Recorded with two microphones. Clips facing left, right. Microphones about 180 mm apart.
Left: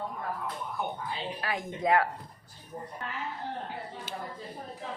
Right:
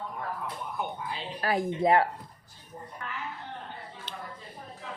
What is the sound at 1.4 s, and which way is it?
Speech, 35° right (ahead or behind).